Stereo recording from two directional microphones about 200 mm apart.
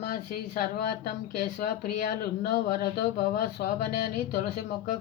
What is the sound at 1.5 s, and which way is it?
Speech, 45° left (ahead or behind).